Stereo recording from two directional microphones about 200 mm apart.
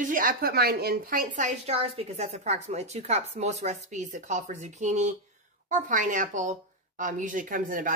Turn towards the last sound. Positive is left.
turn(degrees=-40)  # may be behind; listen again after turning